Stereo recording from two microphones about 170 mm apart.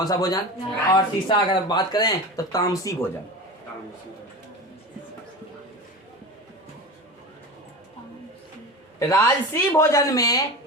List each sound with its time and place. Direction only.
0.0 s speech: 20° left (ahead or behind)
9.0 s speech: 20° left (ahead or behind)